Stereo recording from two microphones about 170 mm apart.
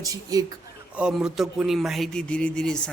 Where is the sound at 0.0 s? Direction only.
20° right (ahead or behind).